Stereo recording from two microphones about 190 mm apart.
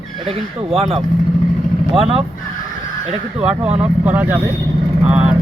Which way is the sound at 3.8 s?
10° right (ahead or behind).